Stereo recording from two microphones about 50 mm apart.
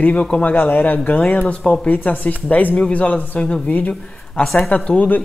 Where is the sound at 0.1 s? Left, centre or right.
Left.